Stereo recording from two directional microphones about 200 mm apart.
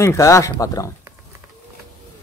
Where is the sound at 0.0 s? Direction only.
15° left (ahead or behind).